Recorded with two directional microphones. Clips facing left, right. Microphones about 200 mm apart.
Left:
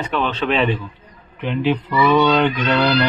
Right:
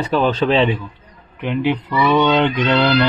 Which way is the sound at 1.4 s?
15° right (ahead or behind).